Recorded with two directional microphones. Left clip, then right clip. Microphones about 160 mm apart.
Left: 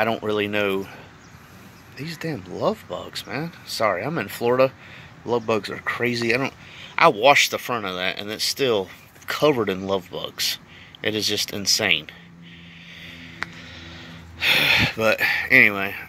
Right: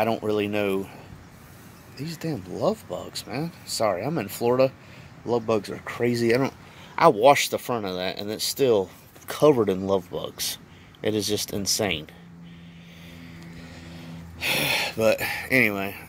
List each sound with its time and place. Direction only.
0.0 s speech: 5° right (ahead or behind)
2.0 s speech: centre (ahead or behind)
6.1 s speech: 40° right (ahead or behind)
13.8 s a sound: 10° right (ahead or behind)